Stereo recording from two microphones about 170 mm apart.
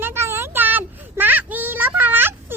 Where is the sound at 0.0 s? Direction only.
15° right (ahead or behind).